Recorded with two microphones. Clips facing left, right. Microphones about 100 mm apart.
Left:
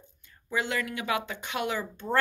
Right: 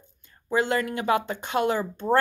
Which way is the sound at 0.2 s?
35° right (ahead or behind).